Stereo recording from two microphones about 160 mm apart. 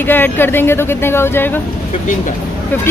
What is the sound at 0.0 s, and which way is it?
Speech, 10° left (ahead or behind).